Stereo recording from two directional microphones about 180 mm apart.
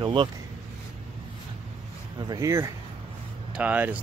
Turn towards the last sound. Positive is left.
turn(degrees=-10)  # may be behind; listen again after turning